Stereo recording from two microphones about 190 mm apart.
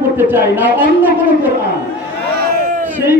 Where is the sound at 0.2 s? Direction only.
10° right (ahead or behind).